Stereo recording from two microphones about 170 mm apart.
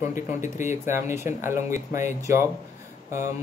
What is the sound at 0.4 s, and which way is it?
Speech, 45° left (ahead or behind).